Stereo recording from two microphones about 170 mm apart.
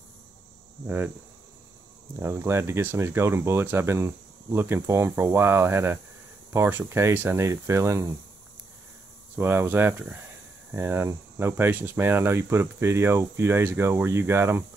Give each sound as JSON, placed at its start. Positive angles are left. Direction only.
{"t": 0.8, "sound": "speech", "side_deg": -10}
{"t": 2.1, "sound": "speech", "side_deg": -15}
{"t": 9.4, "sound": "speech", "side_deg": -10}